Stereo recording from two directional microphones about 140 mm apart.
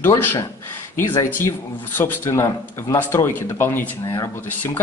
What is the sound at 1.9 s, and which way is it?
Speech, 15° left (ahead or behind).